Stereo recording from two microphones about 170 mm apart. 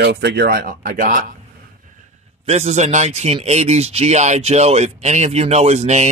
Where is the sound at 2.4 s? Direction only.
40° right (ahead or behind).